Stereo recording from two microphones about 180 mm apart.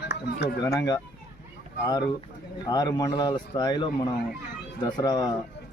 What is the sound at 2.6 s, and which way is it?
Speech, 20° left (ahead or behind).